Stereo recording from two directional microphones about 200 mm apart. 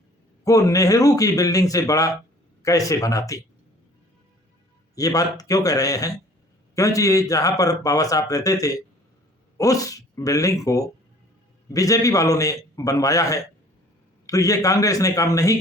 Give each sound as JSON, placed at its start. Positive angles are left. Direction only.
{"t": 0.4, "sound": "a man's voice", "side_deg": 15}
{"t": 4.9, "sound": "a man's voice", "side_deg": 15}